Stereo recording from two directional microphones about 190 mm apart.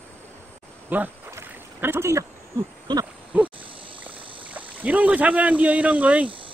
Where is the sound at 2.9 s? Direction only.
25° right (ahead or behind).